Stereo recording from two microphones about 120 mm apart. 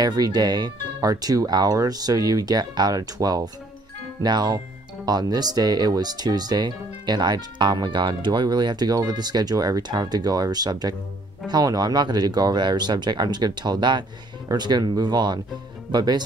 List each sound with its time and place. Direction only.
0.0 s speech: 35° right (ahead or behind)